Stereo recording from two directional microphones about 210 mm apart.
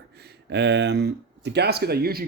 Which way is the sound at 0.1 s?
50° right (ahead or behind).